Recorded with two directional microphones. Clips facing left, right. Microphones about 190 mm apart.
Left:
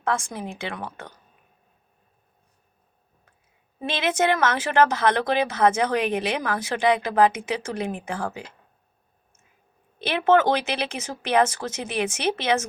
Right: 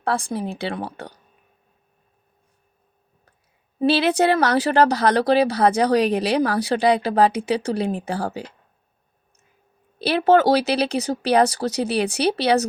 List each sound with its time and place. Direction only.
0.0 s speech: 35° right (ahead or behind)
3.8 s speech: 35° right (ahead or behind)
10.0 s speech: 35° right (ahead or behind)